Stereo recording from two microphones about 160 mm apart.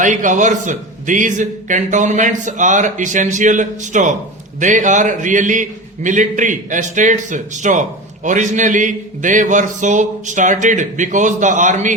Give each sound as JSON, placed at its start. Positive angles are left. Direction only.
{"t": 0.0, "sound": "a man's voice", "side_deg": -50}